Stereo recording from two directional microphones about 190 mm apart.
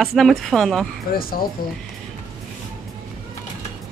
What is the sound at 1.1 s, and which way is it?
Speech, 50° left (ahead or behind).